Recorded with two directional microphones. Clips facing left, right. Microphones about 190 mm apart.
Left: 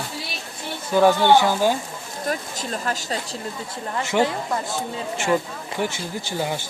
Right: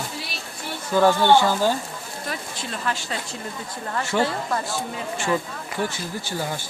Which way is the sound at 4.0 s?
20° left (ahead or behind).